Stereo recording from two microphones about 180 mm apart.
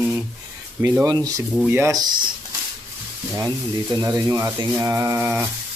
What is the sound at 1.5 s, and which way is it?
Speech, 10° right (ahead or behind).